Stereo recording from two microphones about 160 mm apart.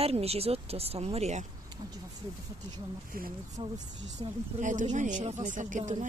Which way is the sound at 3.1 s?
60° right (ahead or behind).